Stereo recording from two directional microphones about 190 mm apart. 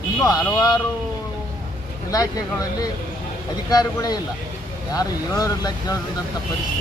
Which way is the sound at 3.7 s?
20° left (ahead or behind).